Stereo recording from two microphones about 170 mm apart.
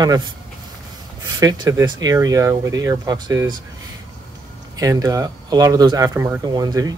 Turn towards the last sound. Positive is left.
turn(degrees=-20)  # may be behind; listen again after turning